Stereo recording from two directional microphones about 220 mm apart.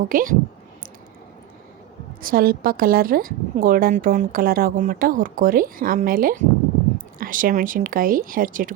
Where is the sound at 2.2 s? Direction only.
40° right (ahead or behind).